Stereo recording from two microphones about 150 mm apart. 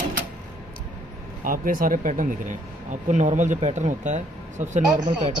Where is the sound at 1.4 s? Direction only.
65° right (ahead or behind).